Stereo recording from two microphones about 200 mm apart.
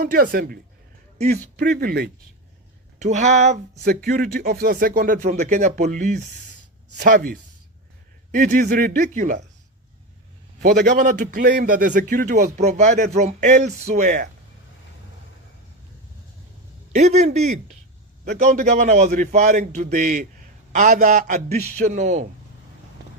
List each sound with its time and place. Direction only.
0.0 s speech: 45° right (ahead or behind)
3.0 s speech: 35° right (ahead or behind)
3.8 s speech: 50° right (ahead or behind)
10.6 s speech: 45° right (ahead or behind)
16.9 s speech: 35° right (ahead or behind)